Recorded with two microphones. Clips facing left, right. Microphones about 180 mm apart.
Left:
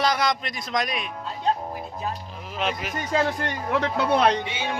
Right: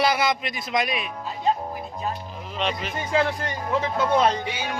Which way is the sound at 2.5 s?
5° left (ahead or behind).